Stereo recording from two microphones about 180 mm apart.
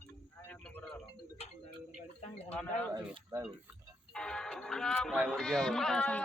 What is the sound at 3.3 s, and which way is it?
Speech, 15° right (ahead or behind).